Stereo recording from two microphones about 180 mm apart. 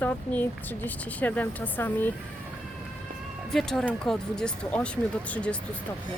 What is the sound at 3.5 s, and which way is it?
Speech, centre (ahead or behind).